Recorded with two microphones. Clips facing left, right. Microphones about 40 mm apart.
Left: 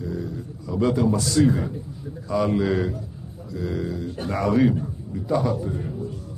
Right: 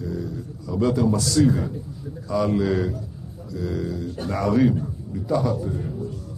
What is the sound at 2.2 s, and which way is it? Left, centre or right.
A man's voice, left.